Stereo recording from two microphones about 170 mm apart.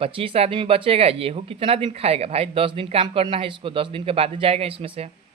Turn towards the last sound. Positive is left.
turn(degrees=-35)  # may be behind; listen again after turning